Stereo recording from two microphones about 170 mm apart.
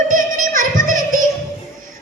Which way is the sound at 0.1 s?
50° right (ahead or behind).